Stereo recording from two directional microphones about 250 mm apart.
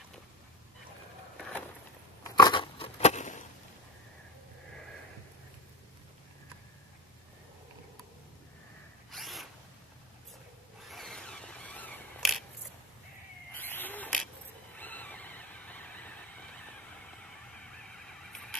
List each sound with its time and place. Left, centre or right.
2.2 s a sound: centre
9.1 s zipper: centre
10.8 s a sound: centre
13.5 s camera: centre
14.8 s vehicle: centre
17.9 s vehicle: centre